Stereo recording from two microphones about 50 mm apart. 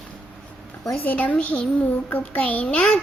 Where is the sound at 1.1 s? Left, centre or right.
Left.